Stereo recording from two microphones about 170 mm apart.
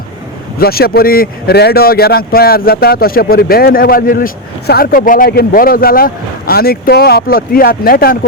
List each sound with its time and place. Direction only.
0.6 s a man's voice: 65° left (ahead or behind)